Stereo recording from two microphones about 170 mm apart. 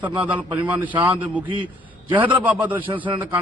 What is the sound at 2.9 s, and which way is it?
Speech, 30° right (ahead or behind).